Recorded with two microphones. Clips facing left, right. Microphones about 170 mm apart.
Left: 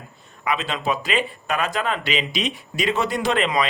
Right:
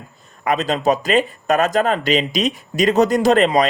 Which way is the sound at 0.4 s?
40° right (ahead or behind).